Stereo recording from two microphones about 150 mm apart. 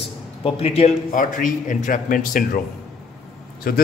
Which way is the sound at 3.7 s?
80° left.